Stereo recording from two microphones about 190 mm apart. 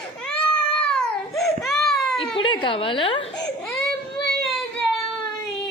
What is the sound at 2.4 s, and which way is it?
A woman's voice, 25° left (ahead or behind).